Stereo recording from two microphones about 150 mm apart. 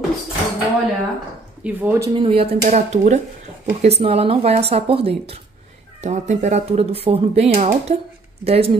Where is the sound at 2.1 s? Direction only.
40° right (ahead or behind).